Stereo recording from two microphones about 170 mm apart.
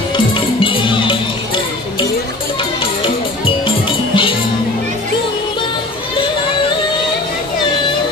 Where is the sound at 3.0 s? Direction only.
30° left (ahead or behind).